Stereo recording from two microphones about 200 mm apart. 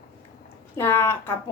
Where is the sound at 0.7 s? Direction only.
10° left (ahead or behind).